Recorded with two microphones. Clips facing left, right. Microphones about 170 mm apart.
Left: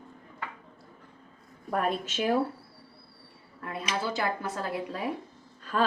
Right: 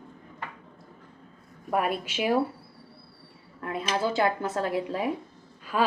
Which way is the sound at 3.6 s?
25° right (ahead or behind).